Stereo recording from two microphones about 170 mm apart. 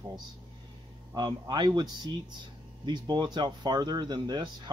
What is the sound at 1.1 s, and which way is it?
Speech, 25° right (ahead or behind).